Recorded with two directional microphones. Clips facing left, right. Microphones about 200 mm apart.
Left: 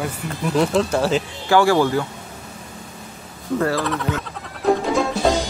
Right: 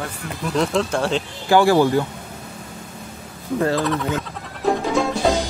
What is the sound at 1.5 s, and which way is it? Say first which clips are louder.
Speech: right 1 dB; 15° right (ahead or behind).